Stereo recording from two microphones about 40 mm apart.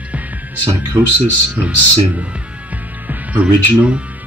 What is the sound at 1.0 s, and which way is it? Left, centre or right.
Speech, right.